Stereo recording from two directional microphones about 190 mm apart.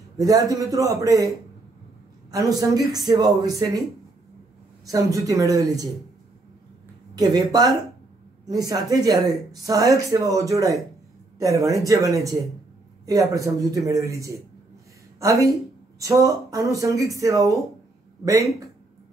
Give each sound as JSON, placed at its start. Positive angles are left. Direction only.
{"t": 0.2, "sound": "speech", "side_deg": -20}
{"t": 2.3, "sound": "speech", "side_deg": -20}
{"t": 4.8, "sound": "speech", "side_deg": -15}
{"t": 7.2, "sound": "speech", "side_deg": -20}